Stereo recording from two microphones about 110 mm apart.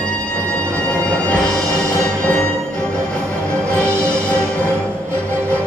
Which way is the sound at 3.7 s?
25° right (ahead or behind).